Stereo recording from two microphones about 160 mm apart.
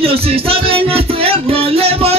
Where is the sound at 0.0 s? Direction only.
35° right (ahead or behind).